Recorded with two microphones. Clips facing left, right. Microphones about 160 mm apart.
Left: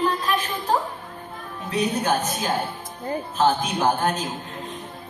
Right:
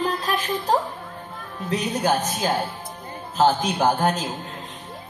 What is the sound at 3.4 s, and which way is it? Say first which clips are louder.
Speech: right 2 dB; 35° right (ahead or behind).